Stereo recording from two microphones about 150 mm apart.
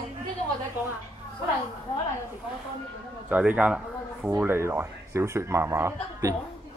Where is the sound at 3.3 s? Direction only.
10° right (ahead or behind).